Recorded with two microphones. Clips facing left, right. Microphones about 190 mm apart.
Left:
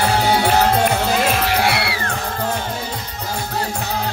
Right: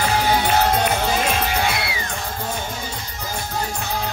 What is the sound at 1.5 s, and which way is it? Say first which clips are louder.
Music: left 4 dB; 75° left (ahead or behind).